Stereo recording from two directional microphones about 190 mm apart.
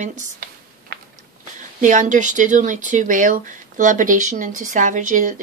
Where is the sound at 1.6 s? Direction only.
40° right (ahead or behind).